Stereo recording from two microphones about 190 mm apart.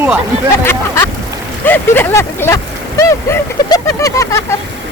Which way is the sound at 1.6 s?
10° left (ahead or behind).